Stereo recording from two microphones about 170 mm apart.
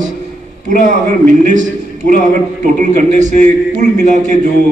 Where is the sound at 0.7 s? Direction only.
50° right (ahead or behind).